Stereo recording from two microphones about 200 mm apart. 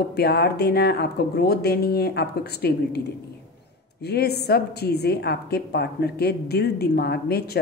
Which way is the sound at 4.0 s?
55° left (ahead or behind).